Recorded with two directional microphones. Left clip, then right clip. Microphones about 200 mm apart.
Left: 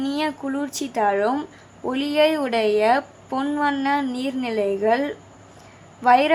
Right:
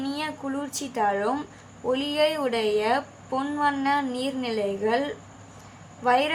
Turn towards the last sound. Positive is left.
turn(degrees=35)  # may be behind; listen again after turning